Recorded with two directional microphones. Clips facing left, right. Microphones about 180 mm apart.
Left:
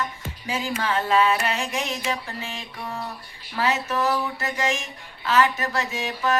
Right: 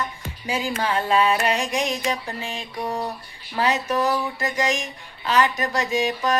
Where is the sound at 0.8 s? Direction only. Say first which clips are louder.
Even; 15° right (ahead or behind).